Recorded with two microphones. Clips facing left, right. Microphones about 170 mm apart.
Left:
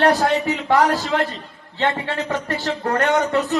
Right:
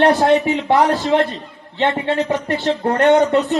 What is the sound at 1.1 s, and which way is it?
Speech, 25° right (ahead or behind).